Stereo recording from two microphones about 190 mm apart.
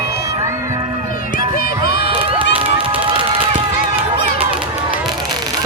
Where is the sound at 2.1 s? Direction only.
30° right (ahead or behind).